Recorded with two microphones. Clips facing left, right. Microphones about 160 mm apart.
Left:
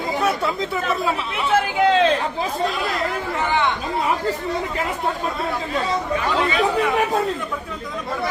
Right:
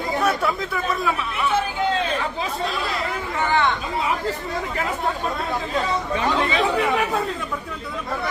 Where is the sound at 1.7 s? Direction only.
90° left.